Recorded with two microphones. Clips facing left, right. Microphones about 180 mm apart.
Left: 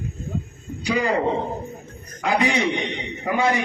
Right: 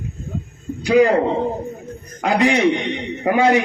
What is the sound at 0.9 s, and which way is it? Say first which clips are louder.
Speech: right 9 dB; 70° right (ahead or behind).